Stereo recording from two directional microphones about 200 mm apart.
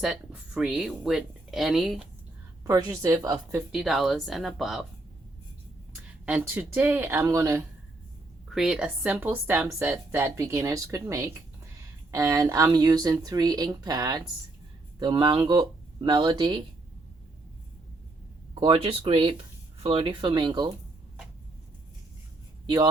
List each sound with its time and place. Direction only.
0.0 s speech: 5° right (ahead or behind)
2.6 s speech: 15° right (ahead or behind)
3.3 s speech: 5° right (ahead or behind)
6.2 s speech: 10° right (ahead or behind)
8.4 s speech: centre (ahead or behind); by 16.6 s 20° right (ahead or behind)
18.5 s speech: 25° right (ahead or behind)
22.6 s speech: 25° right (ahead or behind)